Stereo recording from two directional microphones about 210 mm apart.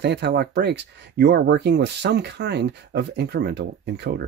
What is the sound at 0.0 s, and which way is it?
Speech, 50° right (ahead or behind).